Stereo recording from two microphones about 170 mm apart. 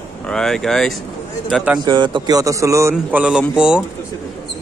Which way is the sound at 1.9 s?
25° right (ahead or behind).